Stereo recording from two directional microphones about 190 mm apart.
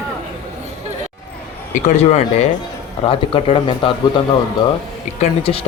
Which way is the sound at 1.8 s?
35° left (ahead or behind).